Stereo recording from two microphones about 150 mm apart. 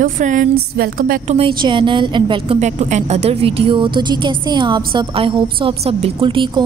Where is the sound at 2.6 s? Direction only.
50° right (ahead or behind).